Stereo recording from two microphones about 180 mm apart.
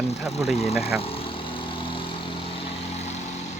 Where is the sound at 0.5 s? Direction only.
35° left (ahead or behind).